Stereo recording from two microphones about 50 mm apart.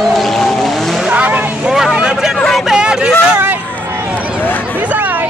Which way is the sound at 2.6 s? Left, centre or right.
Centre.